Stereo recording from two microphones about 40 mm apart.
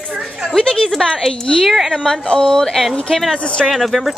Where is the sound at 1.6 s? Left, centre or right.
Centre.